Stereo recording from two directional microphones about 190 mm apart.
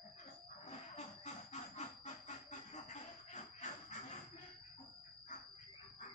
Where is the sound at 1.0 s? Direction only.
35° left (ahead or behind).